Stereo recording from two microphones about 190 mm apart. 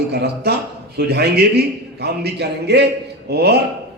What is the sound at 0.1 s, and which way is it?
A man's voice, 60° right (ahead or behind).